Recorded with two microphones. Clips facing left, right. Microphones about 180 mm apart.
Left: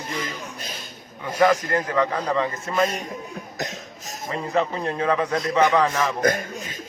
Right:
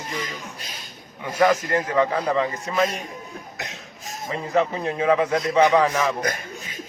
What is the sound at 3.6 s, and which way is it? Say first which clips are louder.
Cough: left 5 dB; 40° left (ahead or behind).